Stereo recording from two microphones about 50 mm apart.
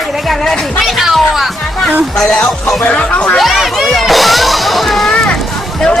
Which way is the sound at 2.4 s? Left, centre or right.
Centre.